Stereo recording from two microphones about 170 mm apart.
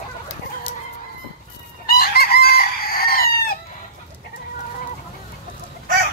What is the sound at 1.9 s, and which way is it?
Chicken, 65° left (ahead or behind).